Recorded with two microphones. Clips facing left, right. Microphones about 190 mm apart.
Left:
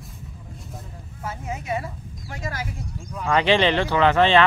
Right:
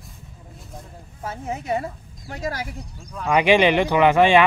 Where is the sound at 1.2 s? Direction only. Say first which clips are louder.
Right 2 dB; 30° right (ahead or behind).